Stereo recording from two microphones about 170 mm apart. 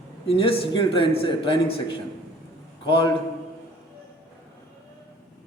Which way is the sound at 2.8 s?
30° left (ahead or behind).